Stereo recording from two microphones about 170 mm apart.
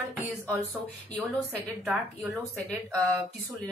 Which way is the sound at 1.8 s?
Centre (ahead or behind).